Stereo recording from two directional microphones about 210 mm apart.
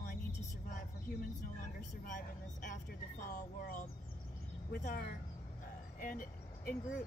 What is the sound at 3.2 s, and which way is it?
A woman's voice, 40° left (ahead or behind).